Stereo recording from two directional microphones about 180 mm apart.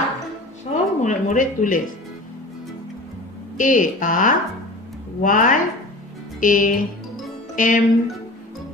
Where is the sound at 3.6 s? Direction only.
45° left (ahead or behind).